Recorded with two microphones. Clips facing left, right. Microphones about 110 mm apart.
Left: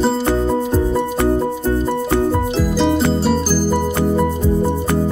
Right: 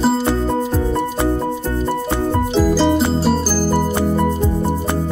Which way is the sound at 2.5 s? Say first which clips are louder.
Right 2 dB; centre (ahead or behind).